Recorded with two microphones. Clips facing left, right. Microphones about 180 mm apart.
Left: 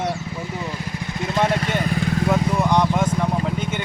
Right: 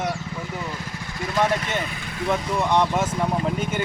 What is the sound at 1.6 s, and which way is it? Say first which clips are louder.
Vehicle: left 6 dB; 45° left (ahead or behind).